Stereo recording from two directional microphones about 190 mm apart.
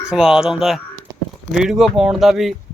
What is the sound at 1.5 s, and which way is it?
Speech, 5° right (ahead or behind).